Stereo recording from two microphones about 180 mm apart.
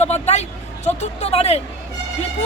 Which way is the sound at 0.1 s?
35° left (ahead or behind).